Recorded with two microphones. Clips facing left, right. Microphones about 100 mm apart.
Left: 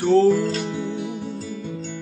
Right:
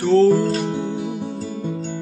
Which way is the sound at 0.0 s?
15° left (ahead or behind).